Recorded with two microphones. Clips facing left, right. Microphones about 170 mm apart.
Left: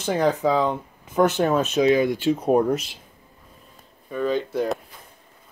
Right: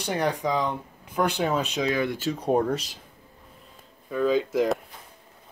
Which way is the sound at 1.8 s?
20° left (ahead or behind).